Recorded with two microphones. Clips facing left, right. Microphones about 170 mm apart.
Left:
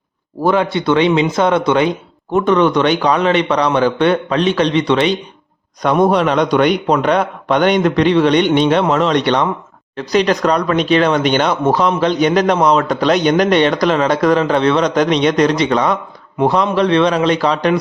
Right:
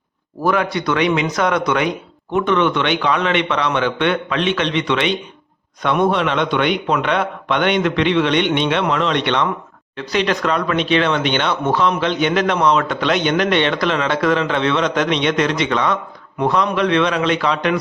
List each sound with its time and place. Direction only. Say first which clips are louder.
0.4 s a man's voice: left 4 dB; 25° left (ahead or behind)